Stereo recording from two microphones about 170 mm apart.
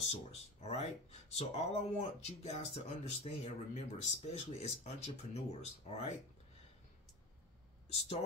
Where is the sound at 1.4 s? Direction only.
35° left (ahead or behind).